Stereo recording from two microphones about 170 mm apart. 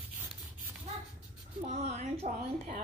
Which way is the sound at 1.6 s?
40° right (ahead or behind).